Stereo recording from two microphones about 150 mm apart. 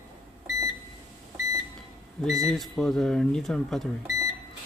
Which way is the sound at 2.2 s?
Centre (ahead or behind).